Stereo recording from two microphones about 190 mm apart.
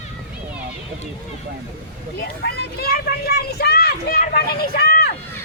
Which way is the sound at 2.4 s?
55° left (ahead or behind).